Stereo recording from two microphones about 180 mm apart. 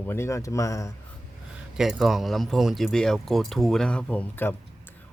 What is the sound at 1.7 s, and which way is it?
Speech, centre (ahead or behind).